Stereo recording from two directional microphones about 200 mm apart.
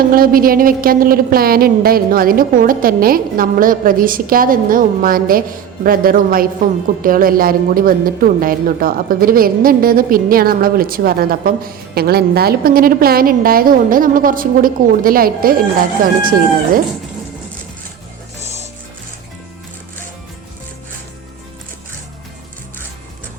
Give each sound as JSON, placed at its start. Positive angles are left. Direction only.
{"t": 0.0, "sound": "a woman's voice", "side_deg": -45}